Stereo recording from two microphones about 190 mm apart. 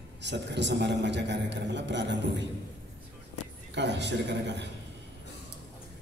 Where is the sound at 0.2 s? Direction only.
65° right (ahead or behind).